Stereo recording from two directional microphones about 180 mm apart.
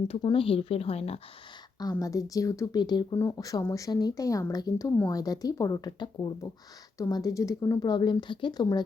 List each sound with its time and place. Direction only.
0.1 s speech: 30° left (ahead or behind)
1.8 s speech: 20° left (ahead or behind)